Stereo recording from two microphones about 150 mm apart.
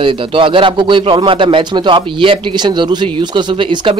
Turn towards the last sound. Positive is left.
turn(degrees=-30)  # may be behind; listen again after turning